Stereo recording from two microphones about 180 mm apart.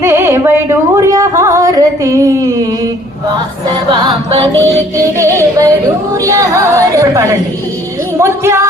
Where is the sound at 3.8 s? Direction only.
25° right (ahead or behind).